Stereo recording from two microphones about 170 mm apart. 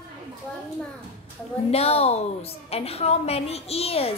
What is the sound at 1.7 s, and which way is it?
A woman's voice, 35° left (ahead or behind).